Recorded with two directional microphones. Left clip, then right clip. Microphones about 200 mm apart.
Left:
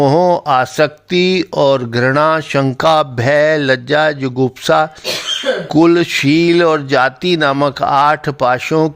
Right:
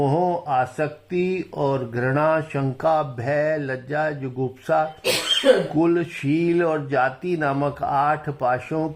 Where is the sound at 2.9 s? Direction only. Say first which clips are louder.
Left 9 dB; 50° left (ahead or behind).